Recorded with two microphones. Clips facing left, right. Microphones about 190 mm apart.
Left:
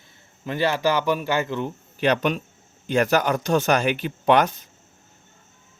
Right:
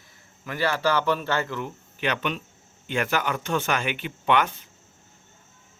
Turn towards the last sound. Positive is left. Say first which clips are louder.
# left 5 dB
turn(degrees=40)  # may be behind; listen again after turning